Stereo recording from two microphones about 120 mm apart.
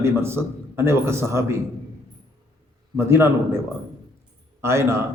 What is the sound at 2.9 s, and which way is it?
Speech, 20° right (ahead or behind).